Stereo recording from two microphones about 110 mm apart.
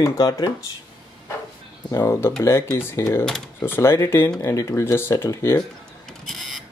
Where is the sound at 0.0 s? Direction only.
30° left (ahead or behind).